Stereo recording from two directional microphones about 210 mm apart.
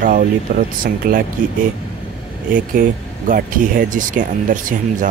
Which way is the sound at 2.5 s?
40° right (ahead or behind).